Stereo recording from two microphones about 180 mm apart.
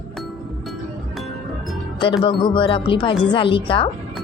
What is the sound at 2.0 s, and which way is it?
A woman's voice, 30° left (ahead or behind).